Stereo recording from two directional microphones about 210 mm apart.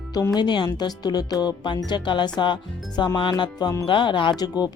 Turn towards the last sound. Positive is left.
turn(degrees=20)  # may be behind; listen again after turning